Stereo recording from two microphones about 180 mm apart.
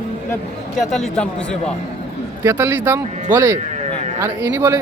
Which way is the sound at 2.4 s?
10° right (ahead or behind).